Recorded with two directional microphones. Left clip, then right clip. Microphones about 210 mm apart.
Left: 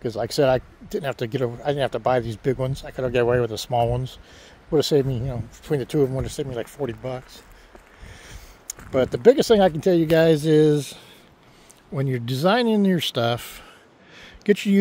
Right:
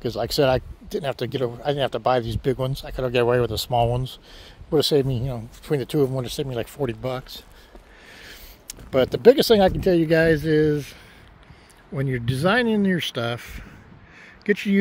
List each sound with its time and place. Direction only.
0.0 s speech: centre (ahead or behind)
8.6 s speech: 5° right (ahead or behind); by 11.0 s 15° left (ahead or behind)
11.9 s speech: 5° left (ahead or behind)
14.2 s a sound: 20° left (ahead or behind)